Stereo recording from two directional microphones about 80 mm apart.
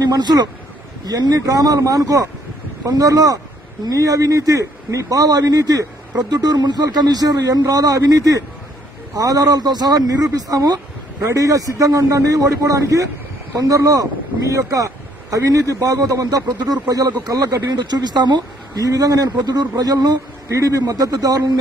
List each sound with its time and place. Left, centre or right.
0.0 s a man's voice: right
18.9 s a man's voice: right
20.4 s a man's voice: right